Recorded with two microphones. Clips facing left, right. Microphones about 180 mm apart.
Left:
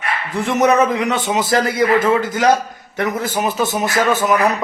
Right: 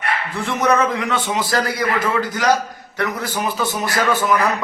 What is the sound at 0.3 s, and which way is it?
A man's voice, 20° left (ahead or behind).